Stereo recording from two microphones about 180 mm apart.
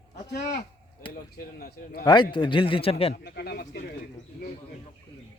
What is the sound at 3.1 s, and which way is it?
Speech, 65° left (ahead or behind).